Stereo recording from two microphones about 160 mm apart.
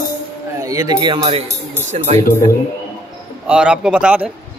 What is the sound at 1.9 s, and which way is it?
Speech, 40° right (ahead or behind).